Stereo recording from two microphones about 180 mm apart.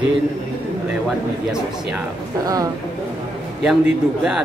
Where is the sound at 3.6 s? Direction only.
5° right (ahead or behind).